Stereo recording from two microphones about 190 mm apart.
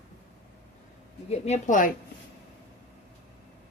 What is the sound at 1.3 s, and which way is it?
Speech, 35° left (ahead or behind).